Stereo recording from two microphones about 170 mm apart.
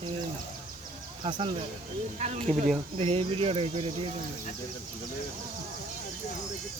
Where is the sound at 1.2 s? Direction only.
30° right (ahead or behind).